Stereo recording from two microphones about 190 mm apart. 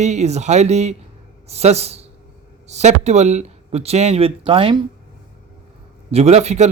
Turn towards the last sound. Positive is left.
turn(degrees=-35)  # may be behind; listen again after turning